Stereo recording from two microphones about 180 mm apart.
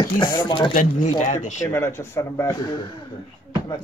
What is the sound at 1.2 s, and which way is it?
Speech, 45° left (ahead or behind).